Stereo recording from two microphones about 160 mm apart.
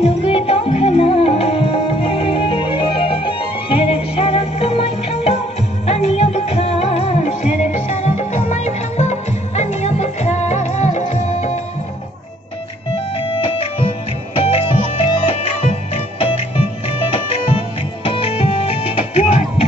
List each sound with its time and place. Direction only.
0.0 s music: 40° left (ahead or behind)
13.2 s music: 35° left (ahead or behind)